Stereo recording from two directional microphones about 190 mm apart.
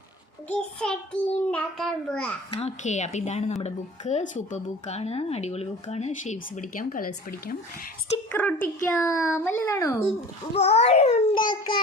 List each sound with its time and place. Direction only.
0.4 s a child's voice: 5° left (ahead or behind)
2.6 s a woman's voice: 35° left (ahead or behind)
8.3 s speech: 10° left (ahead or behind)
10.5 s a woman's voice: 35° left (ahead or behind)
11.4 s a child's voice: 25° left (ahead or behind)